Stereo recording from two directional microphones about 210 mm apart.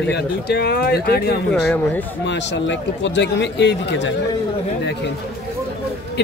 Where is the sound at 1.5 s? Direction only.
5° left (ahead or behind).